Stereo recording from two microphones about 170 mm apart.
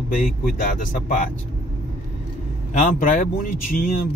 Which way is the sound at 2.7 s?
50° left (ahead or behind).